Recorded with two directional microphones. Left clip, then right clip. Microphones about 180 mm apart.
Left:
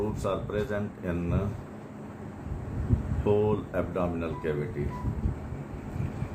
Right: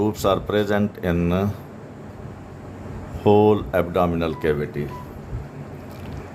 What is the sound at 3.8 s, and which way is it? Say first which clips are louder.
Speech: right 10 dB; 65° right (ahead or behind).